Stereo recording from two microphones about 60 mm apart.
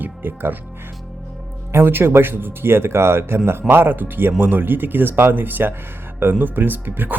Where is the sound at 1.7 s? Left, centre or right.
Right.